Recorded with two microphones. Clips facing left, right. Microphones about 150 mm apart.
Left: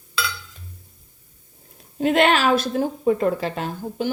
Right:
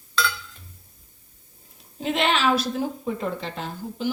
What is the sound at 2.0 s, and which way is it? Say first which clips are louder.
A woman's voice: left 5 dB; 55° left (ahead or behind).